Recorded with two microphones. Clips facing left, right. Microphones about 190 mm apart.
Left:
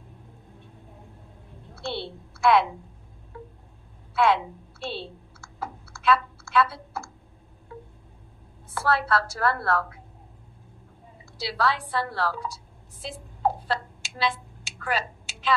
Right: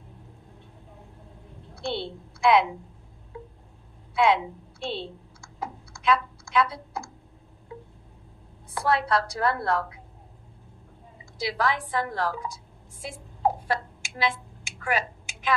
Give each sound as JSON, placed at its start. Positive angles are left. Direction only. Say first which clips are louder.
{"t": 1.8, "sound": "a woman's voice", "louder": "right 2 dB", "side_deg": -15}
{"t": 4.1, "sound": "a woman's voice", "louder": "even", "side_deg": -15}
{"t": 5.6, "sound": "typing", "louder": "even", "side_deg": -15}
{"t": 8.7, "sound": "a woman's voice", "louder": "even", "side_deg": -15}
{"t": 11.3, "sound": "a woman's voice", "louder": "even", "side_deg": -15}
{"t": 13.0, "sound": "a sound", "louder": "even", "side_deg": -15}